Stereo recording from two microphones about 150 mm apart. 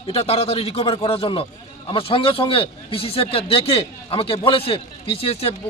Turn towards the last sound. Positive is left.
turn(degrees=40)  # may be behind; listen again after turning